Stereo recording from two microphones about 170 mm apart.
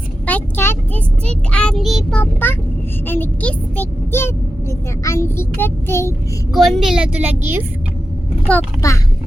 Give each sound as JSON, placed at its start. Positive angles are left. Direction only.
{"t": 0.3, "sound": "child singing", "side_deg": 10}
{"t": 3.1, "sound": "speech", "side_deg": 10}
{"t": 6.5, "sound": "a woman's voice", "side_deg": 0}
{"t": 8.5, "sound": "speech", "side_deg": 5}
{"t": 8.8, "sound": "speech", "side_deg": 20}